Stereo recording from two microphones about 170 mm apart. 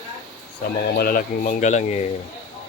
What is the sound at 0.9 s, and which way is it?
Speech, 60° left (ahead or behind).